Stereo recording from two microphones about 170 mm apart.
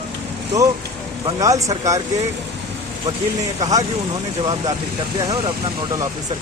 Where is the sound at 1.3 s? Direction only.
20° right (ahead or behind).